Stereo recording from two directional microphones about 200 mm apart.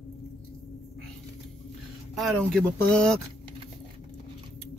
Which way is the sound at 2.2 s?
Centre (ahead or behind).